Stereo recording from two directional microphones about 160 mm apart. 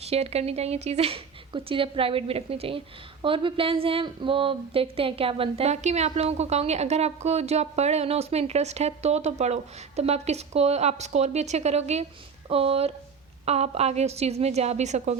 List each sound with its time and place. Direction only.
0.0 s speech: 40° right (ahead or behind)